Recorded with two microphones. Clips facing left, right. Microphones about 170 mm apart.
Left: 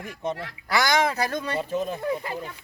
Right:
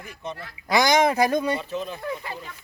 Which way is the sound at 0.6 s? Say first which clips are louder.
Right 4 dB; 20° right (ahead or behind).